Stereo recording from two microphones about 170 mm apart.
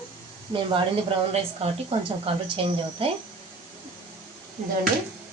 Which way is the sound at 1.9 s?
35° right (ahead or behind).